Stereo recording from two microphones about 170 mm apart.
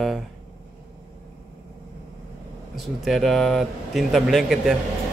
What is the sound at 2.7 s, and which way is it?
Speech, centre (ahead or behind).